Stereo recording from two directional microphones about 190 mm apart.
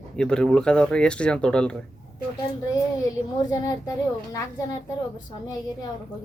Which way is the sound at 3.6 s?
15° left (ahead or behind).